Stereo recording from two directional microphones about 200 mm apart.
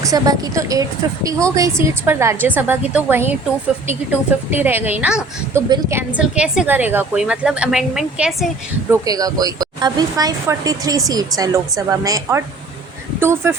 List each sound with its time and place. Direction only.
0.0 s speech: 20° right (ahead or behind)
5.6 s a woman's voice: 20° right (ahead or behind)
6.1 s a woman's voice: 5° right (ahead or behind)
8.9 s speech: 20° right (ahead or behind)